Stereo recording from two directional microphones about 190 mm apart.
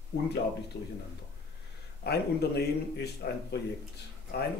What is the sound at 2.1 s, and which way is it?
Speech, 60° left (ahead or behind).